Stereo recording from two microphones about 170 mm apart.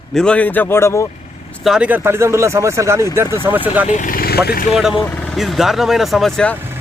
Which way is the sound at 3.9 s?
50° left (ahead or behind).